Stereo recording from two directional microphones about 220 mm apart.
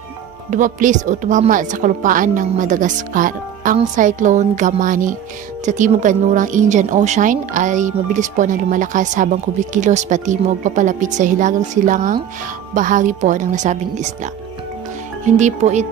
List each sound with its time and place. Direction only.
0.5 s speech: 35° right (ahead or behind)